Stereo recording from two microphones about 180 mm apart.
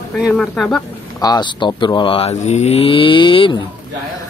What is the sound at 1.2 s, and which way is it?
Speech, 25° left (ahead or behind).